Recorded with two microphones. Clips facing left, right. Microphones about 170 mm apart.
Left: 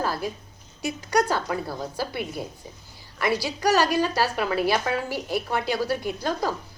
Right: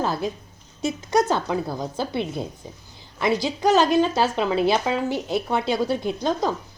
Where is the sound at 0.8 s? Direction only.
25° right (ahead or behind).